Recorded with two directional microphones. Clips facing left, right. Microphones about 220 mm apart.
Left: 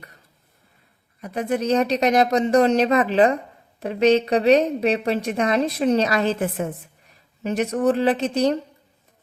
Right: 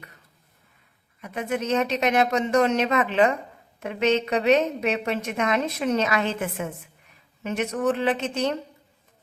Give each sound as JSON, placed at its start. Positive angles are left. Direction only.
{"t": 1.2, "sound": "a woman's voice", "side_deg": 35}